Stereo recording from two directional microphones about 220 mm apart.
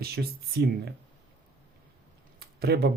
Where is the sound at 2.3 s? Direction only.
45° right (ahead or behind).